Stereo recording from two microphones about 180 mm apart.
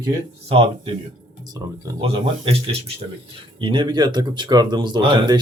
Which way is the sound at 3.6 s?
25° right (ahead or behind).